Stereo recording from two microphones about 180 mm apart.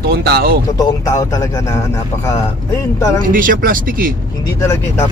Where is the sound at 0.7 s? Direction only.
20° left (ahead or behind).